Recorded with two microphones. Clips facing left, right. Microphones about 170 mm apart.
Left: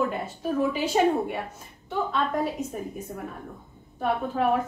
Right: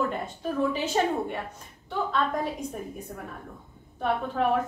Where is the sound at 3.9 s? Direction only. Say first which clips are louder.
Left 1 dB; 5° left (ahead or behind).